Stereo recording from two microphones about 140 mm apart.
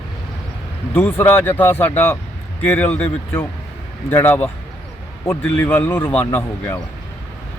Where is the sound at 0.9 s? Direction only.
15° left (ahead or behind).